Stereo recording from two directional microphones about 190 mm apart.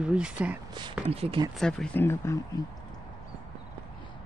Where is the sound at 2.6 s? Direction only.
20° left (ahead or behind).